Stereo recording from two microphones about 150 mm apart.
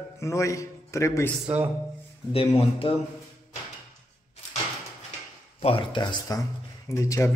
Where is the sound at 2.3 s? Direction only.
40° left (ahead or behind).